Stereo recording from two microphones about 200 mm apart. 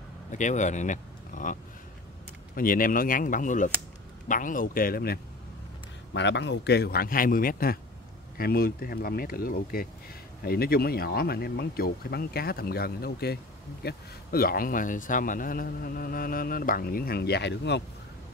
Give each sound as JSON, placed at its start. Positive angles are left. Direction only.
{"t": 0.3, "sound": "speech", "side_deg": 40}
{"t": 6.1, "sound": "speech", "side_deg": 60}